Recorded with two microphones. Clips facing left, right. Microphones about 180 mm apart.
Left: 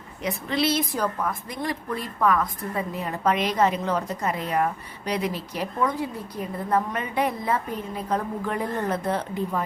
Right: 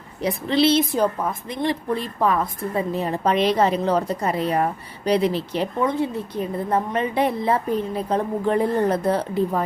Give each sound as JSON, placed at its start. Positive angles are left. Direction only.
{"t": 0.2, "sound": "a woman's voice", "side_deg": -30}